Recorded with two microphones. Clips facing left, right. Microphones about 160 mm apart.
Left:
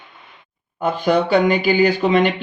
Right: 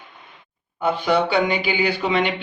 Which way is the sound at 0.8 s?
45° left (ahead or behind).